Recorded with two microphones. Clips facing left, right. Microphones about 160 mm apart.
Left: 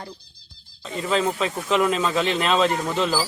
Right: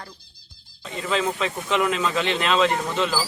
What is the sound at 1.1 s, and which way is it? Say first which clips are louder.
Speech: left 2 dB; 35° left (ahead or behind).